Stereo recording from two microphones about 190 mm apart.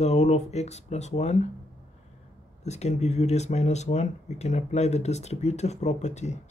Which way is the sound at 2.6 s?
35° left (ahead or behind).